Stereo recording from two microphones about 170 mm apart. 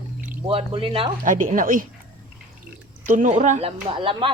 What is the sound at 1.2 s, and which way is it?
Speech, 50° right (ahead or behind).